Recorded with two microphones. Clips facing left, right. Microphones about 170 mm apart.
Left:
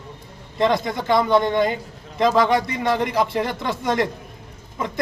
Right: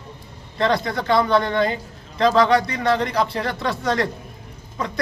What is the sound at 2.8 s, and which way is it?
A man's voice, 15° left (ahead or behind).